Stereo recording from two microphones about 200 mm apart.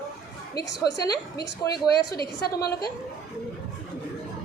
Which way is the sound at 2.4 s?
50° left (ahead or behind).